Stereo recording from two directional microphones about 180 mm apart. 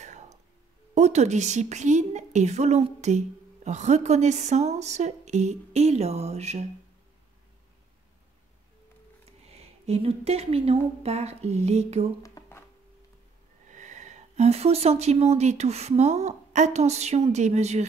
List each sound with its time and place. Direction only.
0.0 s music: 40° right (ahead or behind)
0.9 s a woman's voice: 40° right (ahead or behind)
9.5 s a woman's voice: 35° right (ahead or behind)
12.2 s a sound: 15° left (ahead or behind)
13.7 s speech: 40° right (ahead or behind)